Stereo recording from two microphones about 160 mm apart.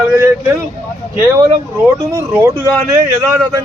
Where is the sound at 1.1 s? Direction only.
15° right (ahead or behind).